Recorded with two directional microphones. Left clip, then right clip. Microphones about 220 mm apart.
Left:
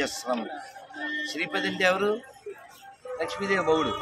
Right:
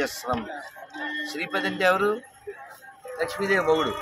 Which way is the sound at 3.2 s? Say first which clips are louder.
Right 3 dB; 15° right (ahead or behind).